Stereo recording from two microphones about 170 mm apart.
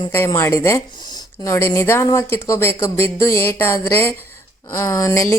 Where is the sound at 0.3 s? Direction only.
15° left (ahead or behind).